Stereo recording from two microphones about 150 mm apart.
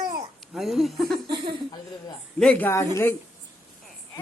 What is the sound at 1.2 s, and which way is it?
Speech, 35° right (ahead or behind).